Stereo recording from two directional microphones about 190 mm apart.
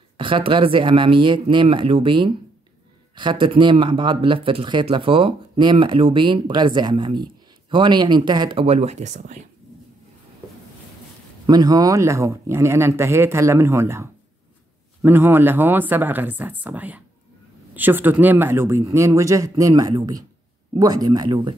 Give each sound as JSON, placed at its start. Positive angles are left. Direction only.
{"t": 0.2, "sound": "speech", "side_deg": -25}
{"t": 11.4, "sound": "speech", "side_deg": -20}